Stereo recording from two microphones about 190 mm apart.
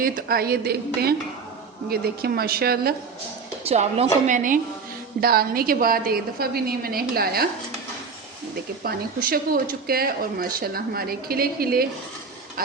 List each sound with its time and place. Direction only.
0.0 s speech: 50° right (ahead or behind)
3.7 s a woman's voice: 35° right (ahead or behind); by 7.4 s 55° right (ahead or behind)
8.8 s speech: 50° right (ahead or behind)